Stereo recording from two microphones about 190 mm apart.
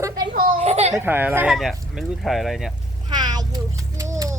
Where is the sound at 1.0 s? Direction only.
10° right (ahead or behind).